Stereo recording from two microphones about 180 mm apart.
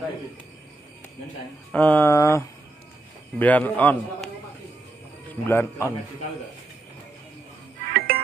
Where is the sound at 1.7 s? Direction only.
10° left (ahead or behind).